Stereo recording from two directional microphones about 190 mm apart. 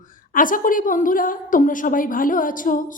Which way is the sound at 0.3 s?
45° left (ahead or behind).